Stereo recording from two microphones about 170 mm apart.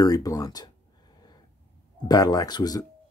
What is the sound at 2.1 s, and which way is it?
Speech, 20° left (ahead or behind).